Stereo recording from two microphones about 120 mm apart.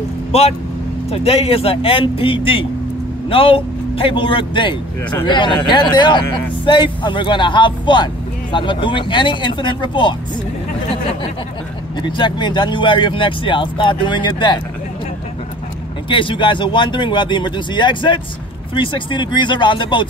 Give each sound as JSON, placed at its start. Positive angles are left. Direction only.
{"t": 0.3, "sound": "a man's voice", "side_deg": 55}
{"t": 12.0, "sound": "speech", "side_deg": 40}
{"t": 16.1, "sound": "speech", "side_deg": 45}